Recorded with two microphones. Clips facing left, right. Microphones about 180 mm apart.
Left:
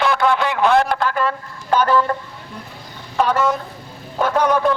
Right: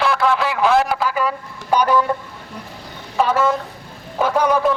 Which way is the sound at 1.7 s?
10° right (ahead or behind).